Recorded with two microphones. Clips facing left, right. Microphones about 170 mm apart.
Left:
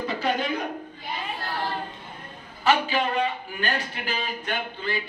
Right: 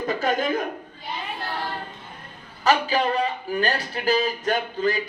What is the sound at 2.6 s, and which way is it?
Speech, 40° right (ahead or behind).